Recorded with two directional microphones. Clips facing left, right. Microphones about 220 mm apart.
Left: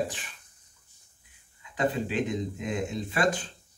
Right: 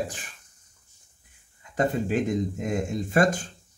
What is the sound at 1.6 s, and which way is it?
Speech, 45° right (ahead or behind).